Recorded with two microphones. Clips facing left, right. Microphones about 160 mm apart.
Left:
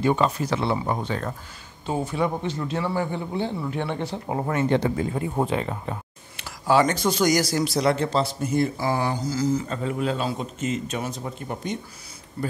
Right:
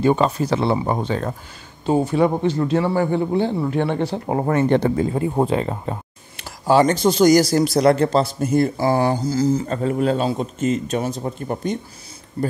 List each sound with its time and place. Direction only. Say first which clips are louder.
0.0 s speech: right 4 dB; 35° right (ahead or behind)
2.0 s speech: right 5 dB; 60° right (ahead or behind)
2.3 s speech: right 8 dB; 40° right (ahead or behind)
2.8 s speech: right 7 dB; 50° right (ahead or behind)
3.3 s speech: right 7 dB; 65° right (ahead or behind)
4.9 s speech: right 6 dB; 35° right (ahead or behind); by 8.7 s 50° right (ahead or behind)
8.7 s speech: right 6 dB; 35° right (ahead or behind)